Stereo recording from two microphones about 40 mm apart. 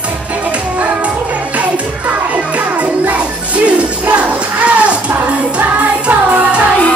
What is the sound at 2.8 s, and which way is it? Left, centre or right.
Music, right.